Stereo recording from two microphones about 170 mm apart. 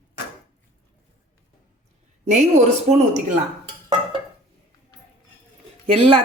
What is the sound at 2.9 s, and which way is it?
Speech, 40° right (ahead or behind).